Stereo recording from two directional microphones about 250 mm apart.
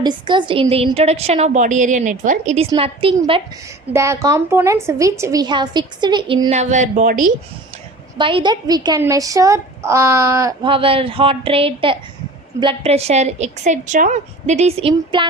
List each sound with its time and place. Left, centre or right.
0.0 s a woman's voice: centre
8.2 s a woman's voice: centre